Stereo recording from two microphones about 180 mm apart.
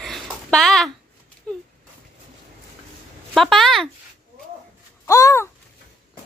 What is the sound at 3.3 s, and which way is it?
Speech, centre (ahead or behind).